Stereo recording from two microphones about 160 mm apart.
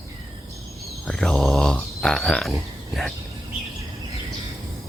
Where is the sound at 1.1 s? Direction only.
5° left (ahead or behind).